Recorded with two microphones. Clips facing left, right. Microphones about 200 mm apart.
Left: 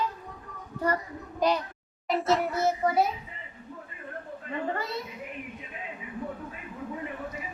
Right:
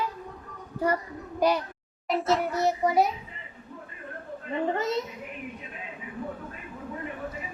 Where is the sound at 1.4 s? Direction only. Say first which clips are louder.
Right 2 dB; 10° right (ahead or behind).